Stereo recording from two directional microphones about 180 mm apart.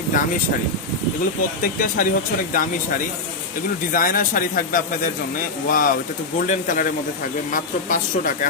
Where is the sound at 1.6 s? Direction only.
50° left (ahead or behind).